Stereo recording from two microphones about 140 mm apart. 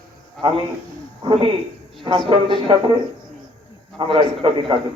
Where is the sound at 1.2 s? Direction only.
40° right (ahead or behind).